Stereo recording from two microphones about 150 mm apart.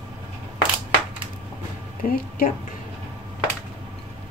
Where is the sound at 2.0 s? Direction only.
70° left (ahead or behind).